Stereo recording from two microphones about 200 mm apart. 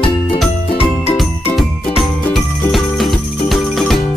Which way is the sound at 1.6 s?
Centre (ahead or behind).